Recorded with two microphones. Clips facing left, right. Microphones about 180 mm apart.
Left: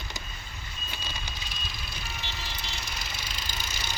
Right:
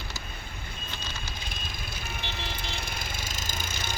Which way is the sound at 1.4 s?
50° right (ahead or behind).